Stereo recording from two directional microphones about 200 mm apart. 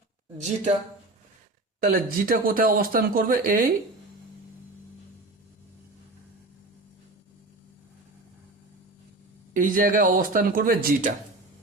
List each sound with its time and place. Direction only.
0.3 s a woman's voice: 35° right (ahead or behind)
1.8 s speech: 45° right (ahead or behind)
9.5 s speech: 40° right (ahead or behind)